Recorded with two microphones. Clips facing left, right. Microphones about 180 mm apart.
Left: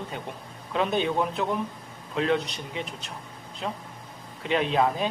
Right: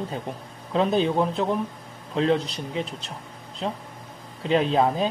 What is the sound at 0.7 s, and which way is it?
A man's voice, 30° right (ahead or behind).